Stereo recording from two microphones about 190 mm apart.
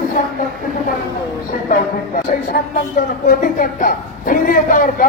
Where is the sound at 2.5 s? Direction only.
55° left (ahead or behind).